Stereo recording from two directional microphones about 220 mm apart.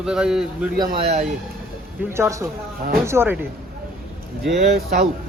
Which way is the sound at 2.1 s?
10° right (ahead or behind).